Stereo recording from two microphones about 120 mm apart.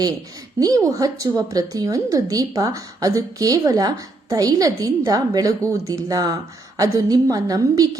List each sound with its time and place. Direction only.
0.6 s a woman's voice: 30° right (ahead or behind)